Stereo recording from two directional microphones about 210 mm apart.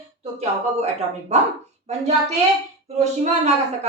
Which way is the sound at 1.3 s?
30° right (ahead or behind).